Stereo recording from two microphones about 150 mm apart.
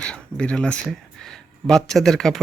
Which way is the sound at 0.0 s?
5° left (ahead or behind).